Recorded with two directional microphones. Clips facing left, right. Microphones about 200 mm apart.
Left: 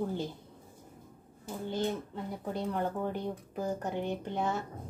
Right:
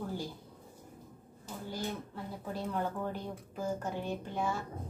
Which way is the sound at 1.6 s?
25° left (ahead or behind).